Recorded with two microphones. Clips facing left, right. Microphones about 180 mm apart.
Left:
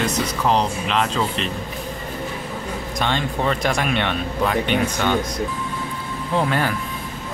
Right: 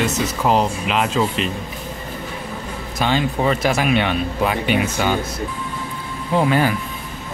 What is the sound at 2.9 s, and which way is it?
Speech, 5° right (ahead or behind).